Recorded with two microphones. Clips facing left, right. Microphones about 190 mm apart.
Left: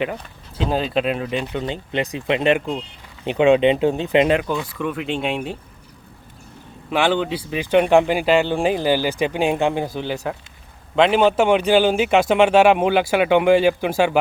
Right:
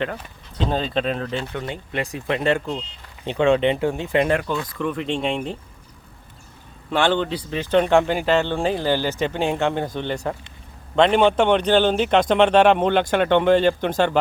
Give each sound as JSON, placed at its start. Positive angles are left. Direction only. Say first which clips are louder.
{"t": 0.0, "sound": "speech", "louder": "left 2 dB", "side_deg": 10}
{"t": 6.9, "sound": "speech", "louder": "left 1 dB", "side_deg": 5}